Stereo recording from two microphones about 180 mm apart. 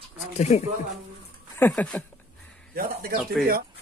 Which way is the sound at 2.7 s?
55° right (ahead or behind).